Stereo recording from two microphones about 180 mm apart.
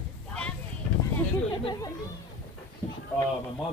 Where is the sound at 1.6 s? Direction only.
25° left (ahead or behind).